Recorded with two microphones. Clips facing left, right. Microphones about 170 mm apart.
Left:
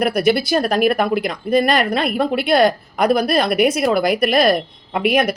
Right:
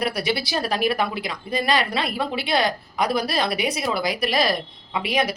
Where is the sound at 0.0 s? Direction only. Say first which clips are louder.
Left 8 dB; 50° left (ahead or behind).